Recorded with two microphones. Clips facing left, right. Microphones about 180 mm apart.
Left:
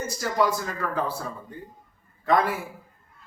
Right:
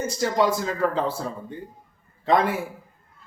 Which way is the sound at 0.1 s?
25° right (ahead or behind).